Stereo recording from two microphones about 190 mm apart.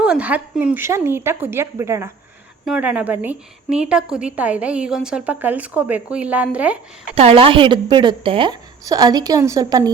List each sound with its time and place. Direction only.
0.0 s a woman's voice: 5° right (ahead or behind)
7.2 s a woman's voice: 30° right (ahead or behind)